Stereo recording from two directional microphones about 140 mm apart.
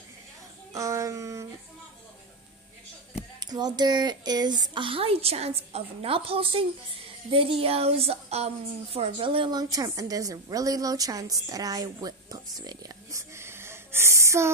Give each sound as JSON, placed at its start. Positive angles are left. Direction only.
{"t": 0.7, "sound": "speech", "side_deg": -20}
{"t": 3.3, "sound": "a woman's voice", "side_deg": -30}